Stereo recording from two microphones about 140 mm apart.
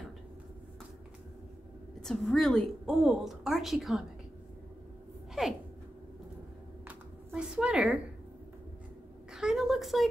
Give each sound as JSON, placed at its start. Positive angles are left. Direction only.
{"t": 2.0, "sound": "a woman's voice", "side_deg": 0}
{"t": 6.9, "sound": "a sound", "side_deg": -10}
{"t": 9.3, "sound": "a woman's voice", "side_deg": -5}